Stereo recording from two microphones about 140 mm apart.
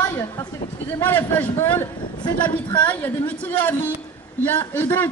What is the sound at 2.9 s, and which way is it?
A man's voice, 10° left (ahead or behind).